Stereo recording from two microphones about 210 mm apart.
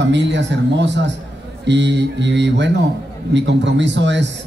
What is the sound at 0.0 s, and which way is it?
A man's voice, 55° right (ahead or behind).